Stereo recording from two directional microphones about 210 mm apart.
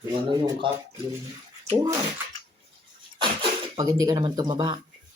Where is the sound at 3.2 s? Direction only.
20° right (ahead or behind).